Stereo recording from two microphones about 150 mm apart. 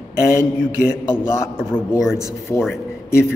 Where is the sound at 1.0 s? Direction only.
15° left (ahead or behind).